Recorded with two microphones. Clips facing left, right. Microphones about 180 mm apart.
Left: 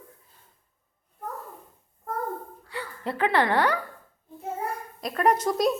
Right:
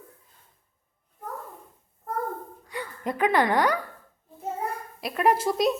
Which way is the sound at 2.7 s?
15° right (ahead or behind).